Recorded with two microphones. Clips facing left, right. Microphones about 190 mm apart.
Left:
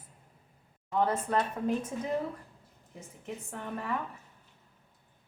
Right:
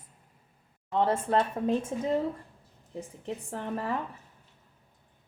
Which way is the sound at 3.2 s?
30° right (ahead or behind).